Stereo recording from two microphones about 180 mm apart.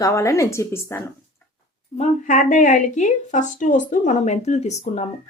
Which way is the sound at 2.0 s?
45° left (ahead or behind).